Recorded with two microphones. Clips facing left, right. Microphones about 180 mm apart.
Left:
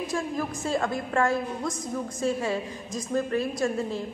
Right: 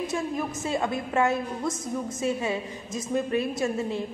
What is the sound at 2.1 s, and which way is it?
A woman's voice, 20° right (ahead or behind).